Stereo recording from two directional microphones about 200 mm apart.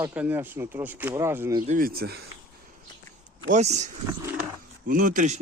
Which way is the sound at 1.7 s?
45° right (ahead or behind).